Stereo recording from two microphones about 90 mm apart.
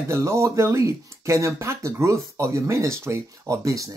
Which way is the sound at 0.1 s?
35° right (ahead or behind).